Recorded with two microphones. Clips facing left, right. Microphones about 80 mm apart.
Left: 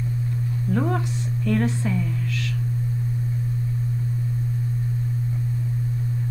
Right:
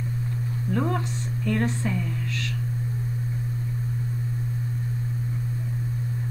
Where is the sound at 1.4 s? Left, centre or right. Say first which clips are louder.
Left 3 dB; right.